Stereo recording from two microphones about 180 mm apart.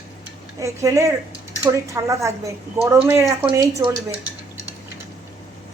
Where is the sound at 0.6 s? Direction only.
15° right (ahead or behind).